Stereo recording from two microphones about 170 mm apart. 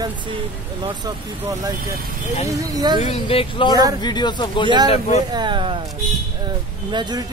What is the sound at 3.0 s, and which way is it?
Speech, 35° left (ahead or behind).